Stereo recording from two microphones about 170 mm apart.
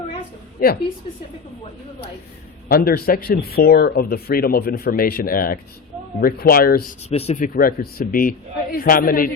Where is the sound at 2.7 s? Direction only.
60° left (ahead or behind).